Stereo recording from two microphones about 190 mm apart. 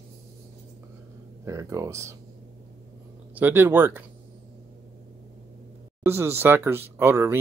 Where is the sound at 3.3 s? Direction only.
10° right (ahead or behind).